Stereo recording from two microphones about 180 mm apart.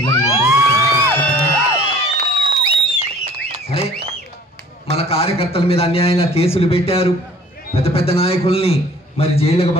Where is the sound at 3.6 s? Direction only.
35° left (ahead or behind).